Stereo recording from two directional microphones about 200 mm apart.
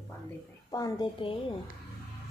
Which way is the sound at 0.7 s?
20° left (ahead or behind).